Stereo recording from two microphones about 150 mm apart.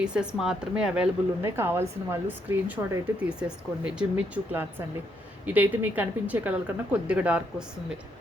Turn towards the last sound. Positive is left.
turn(degrees=-5)  # may be behind; listen again after turning